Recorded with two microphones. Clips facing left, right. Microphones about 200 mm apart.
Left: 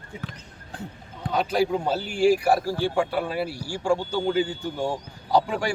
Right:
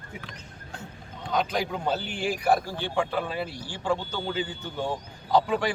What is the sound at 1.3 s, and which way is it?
A man's voice, 10° left (ahead or behind).